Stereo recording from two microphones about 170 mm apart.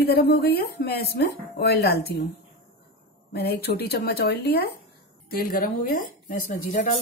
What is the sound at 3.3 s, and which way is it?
A woman's voice, 70° left (ahead or behind).